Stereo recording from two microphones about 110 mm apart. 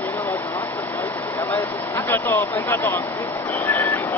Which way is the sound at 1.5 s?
20° left (ahead or behind).